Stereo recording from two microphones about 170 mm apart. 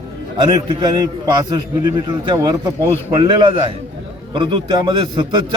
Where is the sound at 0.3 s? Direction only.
25° right (ahead or behind).